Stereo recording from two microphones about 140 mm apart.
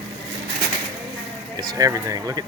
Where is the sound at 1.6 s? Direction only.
30° right (ahead or behind).